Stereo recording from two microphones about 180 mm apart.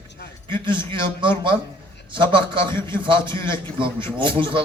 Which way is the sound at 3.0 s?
25° right (ahead or behind).